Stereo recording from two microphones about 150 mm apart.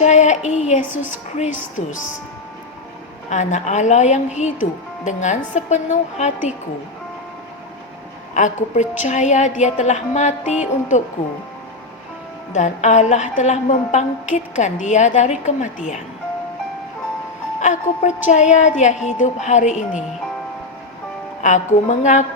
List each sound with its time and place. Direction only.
0.0 s a woman's voice: 50° left (ahead or behind)
0.8 s a woman's voice: 10° right (ahead or behind)
3.2 s a woman's voice: 50° left (ahead or behind)
8.3 s a woman's voice: 55° left (ahead or behind)
12.5 s a woman's voice: 55° left (ahead or behind)
17.6 s a woman's voice: 55° left (ahead or behind)
21.4 s a woman's voice: 55° left (ahead or behind)